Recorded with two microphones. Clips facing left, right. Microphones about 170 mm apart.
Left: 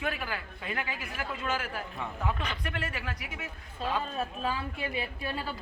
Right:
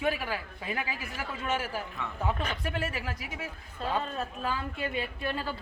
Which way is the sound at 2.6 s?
25° right (ahead or behind).